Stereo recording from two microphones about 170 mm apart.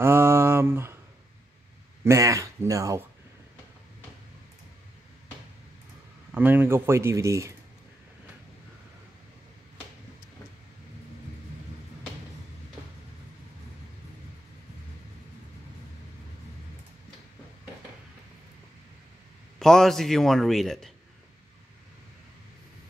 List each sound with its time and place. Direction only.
0.0 s a sound: 15° right (ahead or behind)
2.0 s speech: 20° right (ahead or behind)
6.3 s speech: 10° right (ahead or behind)
19.6 s a man's voice: centre (ahead or behind)